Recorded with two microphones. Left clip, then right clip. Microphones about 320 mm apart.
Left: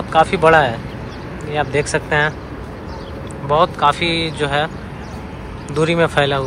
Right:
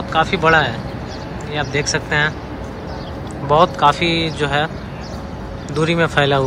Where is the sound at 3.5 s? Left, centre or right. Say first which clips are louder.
Right 1 dB; centre.